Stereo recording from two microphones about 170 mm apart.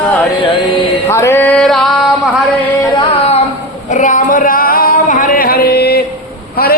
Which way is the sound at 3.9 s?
50° left (ahead or behind).